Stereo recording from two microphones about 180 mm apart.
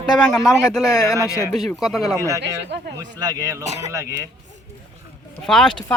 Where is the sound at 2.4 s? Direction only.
70° right (ahead or behind).